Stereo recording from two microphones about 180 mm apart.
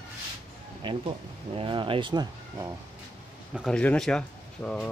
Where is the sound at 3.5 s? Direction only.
5° left (ahead or behind).